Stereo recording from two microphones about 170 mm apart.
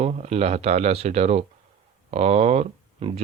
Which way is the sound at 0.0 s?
40° right (ahead or behind).